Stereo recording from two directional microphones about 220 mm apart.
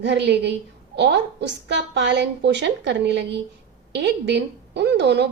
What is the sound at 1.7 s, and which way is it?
A woman's voice, 50° right (ahead or behind).